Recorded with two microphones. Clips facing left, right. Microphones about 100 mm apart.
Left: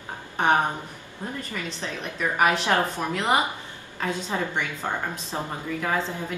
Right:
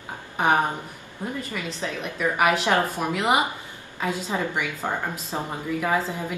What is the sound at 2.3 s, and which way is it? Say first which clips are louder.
A woman's voice: even; 5° right (ahead or behind).